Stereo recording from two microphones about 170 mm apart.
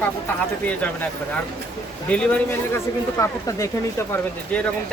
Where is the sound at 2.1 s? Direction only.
5° left (ahead or behind).